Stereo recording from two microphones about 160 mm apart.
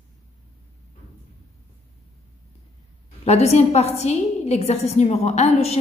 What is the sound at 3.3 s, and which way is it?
A woman's voice, 40° left (ahead or behind).